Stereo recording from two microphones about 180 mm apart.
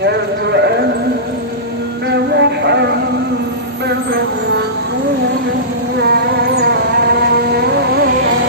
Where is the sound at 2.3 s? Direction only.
70° right (ahead or behind).